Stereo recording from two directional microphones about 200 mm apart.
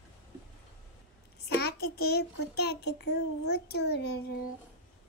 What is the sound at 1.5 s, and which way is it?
A child's voice, 55° left (ahead or behind).